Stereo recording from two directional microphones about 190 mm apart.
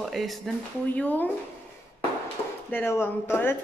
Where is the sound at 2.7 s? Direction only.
10° left (ahead or behind).